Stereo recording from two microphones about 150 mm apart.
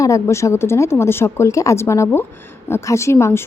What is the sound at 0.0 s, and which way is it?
A woman's voice, 20° left (ahead or behind).